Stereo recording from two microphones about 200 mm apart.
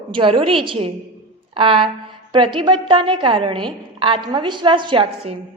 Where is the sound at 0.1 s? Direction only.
25° right (ahead or behind).